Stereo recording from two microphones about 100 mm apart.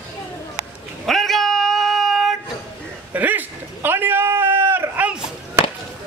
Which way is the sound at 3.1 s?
15° right (ahead or behind).